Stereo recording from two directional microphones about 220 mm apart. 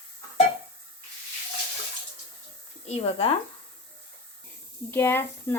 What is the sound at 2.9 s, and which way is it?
Speech, 25° left (ahead or behind).